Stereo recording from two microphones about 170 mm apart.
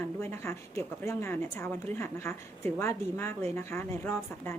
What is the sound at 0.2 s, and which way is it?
A woman's voice, 15° left (ahead or behind).